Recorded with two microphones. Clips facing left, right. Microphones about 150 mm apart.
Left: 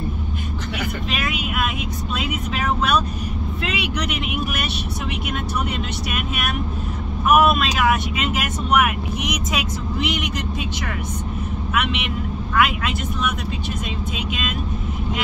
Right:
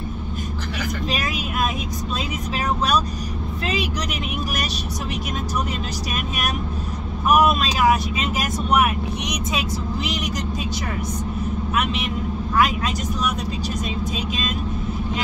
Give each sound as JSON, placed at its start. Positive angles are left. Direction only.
{"t": 1.1, "sound": "speech", "side_deg": -35}
{"t": 3.6, "sound": "speech", "side_deg": -35}
{"t": 6.1, "sound": "speech", "side_deg": -35}
{"t": 11.7, "sound": "speech", "side_deg": -35}